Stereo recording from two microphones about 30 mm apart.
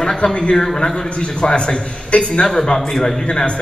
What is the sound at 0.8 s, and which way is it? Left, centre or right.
Speech, centre.